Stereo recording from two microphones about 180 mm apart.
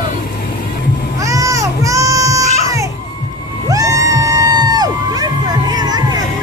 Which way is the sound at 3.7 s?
20° right (ahead or behind).